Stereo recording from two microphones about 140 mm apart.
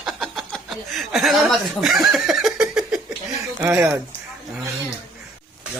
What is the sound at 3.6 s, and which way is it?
Speech, 20° right (ahead or behind).